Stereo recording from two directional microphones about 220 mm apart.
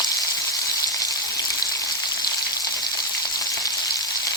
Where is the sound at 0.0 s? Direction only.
15° left (ahead or behind).